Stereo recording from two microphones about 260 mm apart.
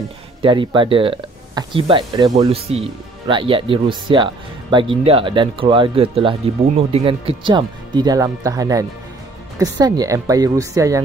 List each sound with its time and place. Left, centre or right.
0.4 s a woman's voice: centre